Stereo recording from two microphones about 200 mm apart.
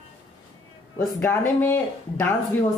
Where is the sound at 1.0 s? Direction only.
15° left (ahead or behind).